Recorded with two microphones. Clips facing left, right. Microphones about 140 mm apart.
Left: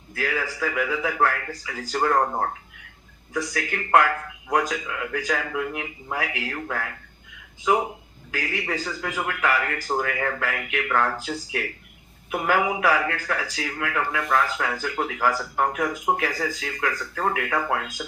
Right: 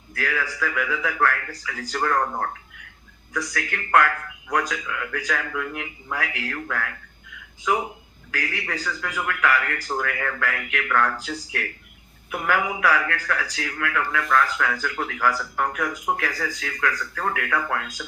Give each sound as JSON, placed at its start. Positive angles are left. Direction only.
{"t": 0.1, "sound": "speech", "side_deg": 20}
{"t": 3.3, "sound": "speech", "side_deg": 25}
{"t": 8.3, "sound": "speech", "side_deg": 20}